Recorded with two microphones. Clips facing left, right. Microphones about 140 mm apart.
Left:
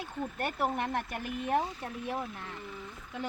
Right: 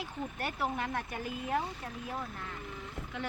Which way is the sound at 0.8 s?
70° left (ahead or behind).